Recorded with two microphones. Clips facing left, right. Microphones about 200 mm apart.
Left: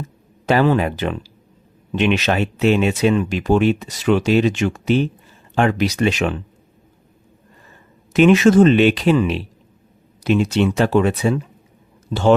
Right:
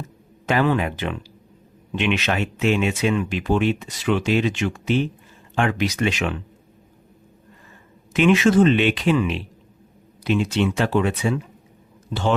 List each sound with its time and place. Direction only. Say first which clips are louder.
0.4 s speech: left 4 dB; 35° left (ahead or behind)
8.1 s speech: left 5 dB; 40° left (ahead or behind)